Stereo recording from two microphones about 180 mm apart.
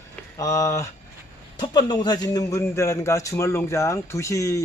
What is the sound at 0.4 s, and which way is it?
A man's voice, 15° left (ahead or behind).